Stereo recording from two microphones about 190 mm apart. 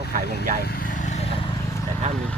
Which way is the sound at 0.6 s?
50° left (ahead or behind).